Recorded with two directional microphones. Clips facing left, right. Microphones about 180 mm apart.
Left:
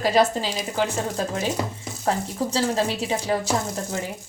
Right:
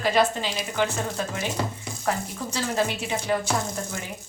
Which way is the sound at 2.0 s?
30° left (ahead or behind).